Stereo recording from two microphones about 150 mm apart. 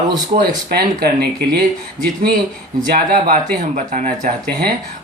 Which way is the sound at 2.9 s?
75° right (ahead or behind).